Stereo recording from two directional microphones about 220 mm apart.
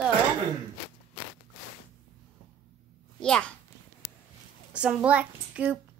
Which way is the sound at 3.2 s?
5° left (ahead or behind).